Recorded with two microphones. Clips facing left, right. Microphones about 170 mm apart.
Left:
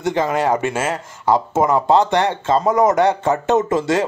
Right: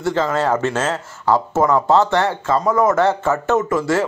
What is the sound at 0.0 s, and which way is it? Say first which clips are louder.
Speech: even; 15° left (ahead or behind).